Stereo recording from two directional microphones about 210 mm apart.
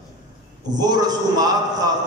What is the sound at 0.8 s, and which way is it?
Speech, 20° right (ahead or behind).